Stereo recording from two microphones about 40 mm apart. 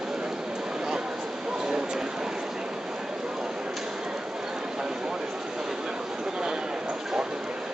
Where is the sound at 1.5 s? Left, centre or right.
Centre.